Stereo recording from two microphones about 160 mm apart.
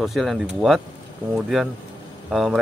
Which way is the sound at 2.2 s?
5° right (ahead or behind).